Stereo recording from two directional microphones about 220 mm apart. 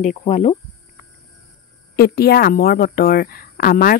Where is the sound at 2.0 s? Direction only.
45° left (ahead or behind).